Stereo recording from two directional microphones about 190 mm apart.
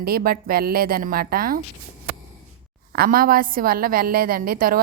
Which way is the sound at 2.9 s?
50° right (ahead or behind).